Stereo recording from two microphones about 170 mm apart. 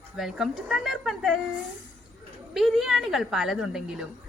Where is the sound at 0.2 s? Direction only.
5° right (ahead or behind).